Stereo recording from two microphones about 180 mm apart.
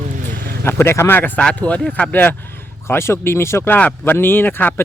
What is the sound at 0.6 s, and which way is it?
Speech, 15° left (ahead or behind).